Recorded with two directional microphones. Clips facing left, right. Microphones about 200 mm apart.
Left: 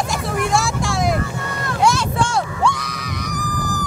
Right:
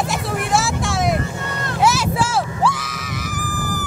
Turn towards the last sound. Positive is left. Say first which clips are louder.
# left 1 dB
turn(degrees=-5)  # may be behind; listen again after turning